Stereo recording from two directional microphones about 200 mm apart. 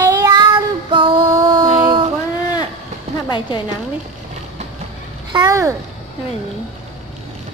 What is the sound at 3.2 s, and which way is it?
Speech, 25° left (ahead or behind).